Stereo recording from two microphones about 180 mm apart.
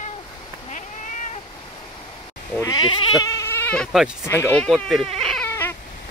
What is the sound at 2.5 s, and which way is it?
Goat, 20° left (ahead or behind).